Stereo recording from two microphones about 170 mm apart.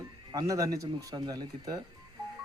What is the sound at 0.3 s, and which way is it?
Speech, 20° right (ahead or behind).